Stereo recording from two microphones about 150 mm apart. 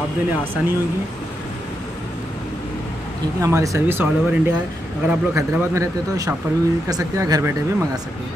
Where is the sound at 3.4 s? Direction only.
20° right (ahead or behind).